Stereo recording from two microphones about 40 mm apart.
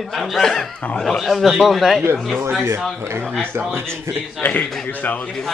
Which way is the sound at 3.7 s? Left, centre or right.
Right.